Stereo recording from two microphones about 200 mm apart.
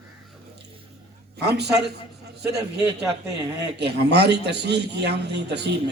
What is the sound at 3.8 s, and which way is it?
A man's voice, 55° right (ahead or behind).